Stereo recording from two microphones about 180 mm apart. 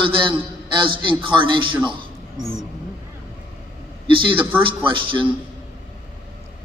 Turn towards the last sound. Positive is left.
turn(degrees=-25)  # may be behind; listen again after turning